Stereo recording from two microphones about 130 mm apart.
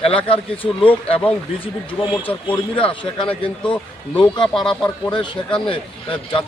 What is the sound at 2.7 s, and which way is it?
Speech, 40° left (ahead or behind).